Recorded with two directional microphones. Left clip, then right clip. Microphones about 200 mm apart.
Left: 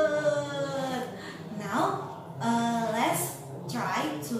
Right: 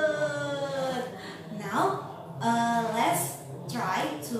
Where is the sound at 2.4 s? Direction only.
Centre (ahead or behind).